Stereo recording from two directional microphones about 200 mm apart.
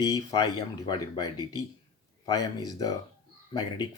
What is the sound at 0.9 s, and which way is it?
Speech, 20° left (ahead or behind).